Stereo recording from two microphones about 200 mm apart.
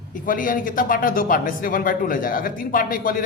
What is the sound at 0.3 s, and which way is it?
A man's voice, 40° left (ahead or behind).